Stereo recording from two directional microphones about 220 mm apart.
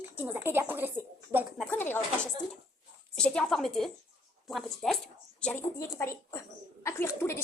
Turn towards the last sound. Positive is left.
turn(degrees=10)  # may be behind; listen again after turning